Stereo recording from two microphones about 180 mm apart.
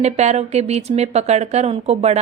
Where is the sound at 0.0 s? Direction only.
40° right (ahead or behind).